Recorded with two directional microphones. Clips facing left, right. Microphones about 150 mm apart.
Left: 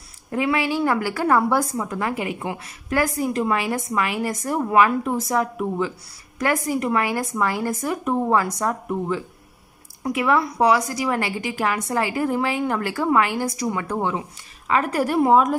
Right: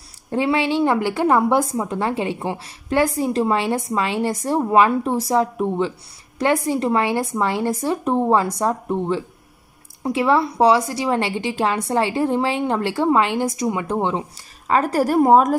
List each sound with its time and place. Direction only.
0.3 s a woman's voice: 30° right (ahead or behind)
14.3 s speech: 35° right (ahead or behind)